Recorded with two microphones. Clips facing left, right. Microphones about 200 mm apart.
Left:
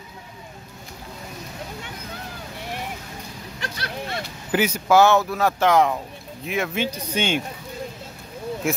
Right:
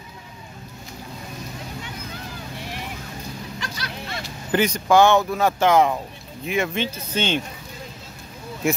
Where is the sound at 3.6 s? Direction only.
55° left (ahead or behind).